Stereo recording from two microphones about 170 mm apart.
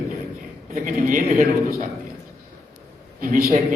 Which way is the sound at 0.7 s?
50° right (ahead or behind).